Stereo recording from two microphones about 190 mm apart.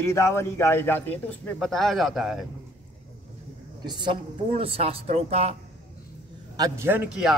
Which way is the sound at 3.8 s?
25° right (ahead or behind).